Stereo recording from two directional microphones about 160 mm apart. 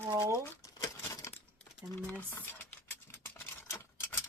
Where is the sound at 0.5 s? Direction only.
20° left (ahead or behind).